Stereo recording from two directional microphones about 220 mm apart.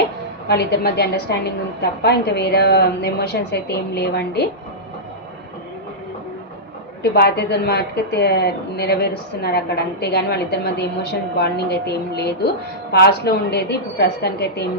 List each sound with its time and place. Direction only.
0.4 s a woman's voice: 50° left (ahead or behind)
7.0 s a woman's voice: 50° left (ahead or behind)